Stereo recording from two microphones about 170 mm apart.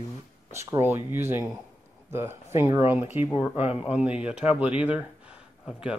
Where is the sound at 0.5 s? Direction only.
15° right (ahead or behind).